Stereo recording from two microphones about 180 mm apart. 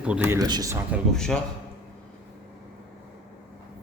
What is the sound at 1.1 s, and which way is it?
Speech, 5° left (ahead or behind).